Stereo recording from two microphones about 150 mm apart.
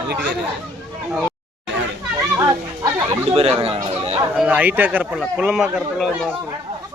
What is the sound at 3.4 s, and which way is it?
Chatter, 40° right (ahead or behind).